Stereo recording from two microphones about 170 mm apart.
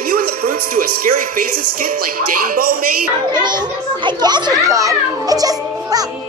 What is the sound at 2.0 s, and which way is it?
Music, 60° right (ahead or behind).